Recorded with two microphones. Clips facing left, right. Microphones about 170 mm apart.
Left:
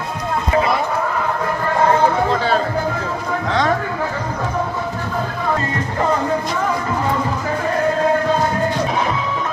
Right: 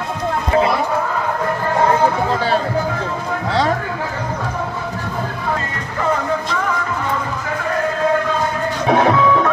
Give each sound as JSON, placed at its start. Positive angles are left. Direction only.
{"t": 8.8, "sound": "music", "side_deg": -60}